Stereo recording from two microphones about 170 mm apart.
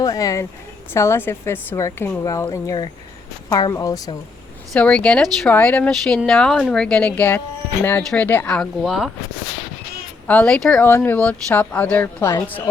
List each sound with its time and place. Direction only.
0.0 s a woman's voice: 20° left (ahead or behind)
4.7 s speech: 5° left (ahead or behind)
10.2 s speech: 5° left (ahead or behind)